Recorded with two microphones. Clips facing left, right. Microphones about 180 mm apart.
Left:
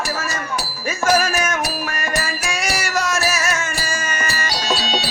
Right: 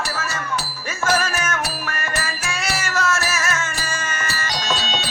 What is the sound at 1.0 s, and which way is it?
Music, 15° left (ahead or behind).